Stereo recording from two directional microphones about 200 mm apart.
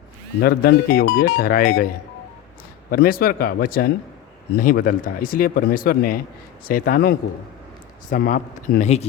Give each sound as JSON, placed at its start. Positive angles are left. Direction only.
{"t": 0.4, "sound": "speech", "side_deg": 50}
{"t": 2.9, "sound": "speech", "side_deg": 45}